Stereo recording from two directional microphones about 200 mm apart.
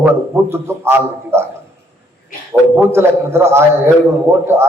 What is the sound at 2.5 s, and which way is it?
A man's voice, 10° right (ahead or behind).